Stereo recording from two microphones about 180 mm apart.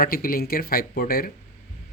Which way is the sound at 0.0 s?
55° left (ahead or behind).